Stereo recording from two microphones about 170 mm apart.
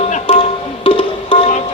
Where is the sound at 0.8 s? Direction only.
30° left (ahead or behind).